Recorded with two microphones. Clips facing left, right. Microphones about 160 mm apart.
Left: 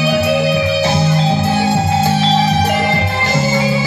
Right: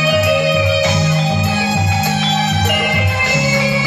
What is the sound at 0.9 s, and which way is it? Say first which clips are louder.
Music: left 2 dB; 60° left (ahead or behind).